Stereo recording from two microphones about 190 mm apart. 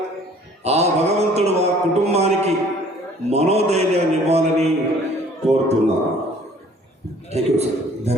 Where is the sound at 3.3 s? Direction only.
35° right (ahead or behind).